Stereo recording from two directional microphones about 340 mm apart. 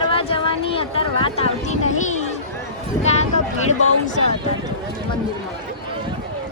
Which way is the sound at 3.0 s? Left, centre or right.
Centre.